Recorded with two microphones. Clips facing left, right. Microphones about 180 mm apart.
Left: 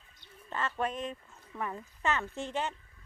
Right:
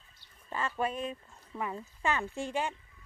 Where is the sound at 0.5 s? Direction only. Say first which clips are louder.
Right 1 dB; 10° right (ahead or behind).